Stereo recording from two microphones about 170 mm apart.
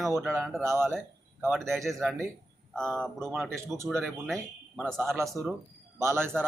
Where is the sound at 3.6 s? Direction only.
15° right (ahead or behind).